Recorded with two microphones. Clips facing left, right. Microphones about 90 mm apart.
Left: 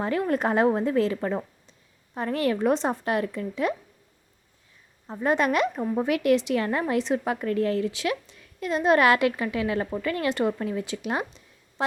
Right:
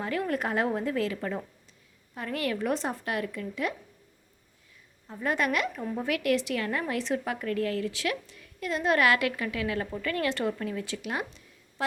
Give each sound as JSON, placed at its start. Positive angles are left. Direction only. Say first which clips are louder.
{"t": 0.0, "sound": "a woman's voice", "louder": "left 5 dB", "side_deg": 25}
{"t": 5.0, "sound": "a woman's voice", "louder": "left 5 dB", "side_deg": 35}